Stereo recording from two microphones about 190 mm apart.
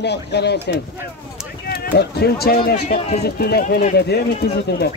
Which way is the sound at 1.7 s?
50° left (ahead or behind).